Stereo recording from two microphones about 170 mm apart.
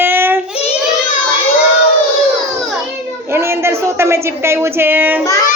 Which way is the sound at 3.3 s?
15° right (ahead or behind).